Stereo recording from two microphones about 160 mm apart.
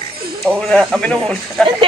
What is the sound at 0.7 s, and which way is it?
Speech, 5° left (ahead or behind).